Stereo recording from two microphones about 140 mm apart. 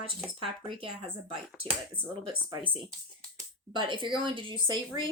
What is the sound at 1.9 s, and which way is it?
Speech, 35° right (ahead or behind).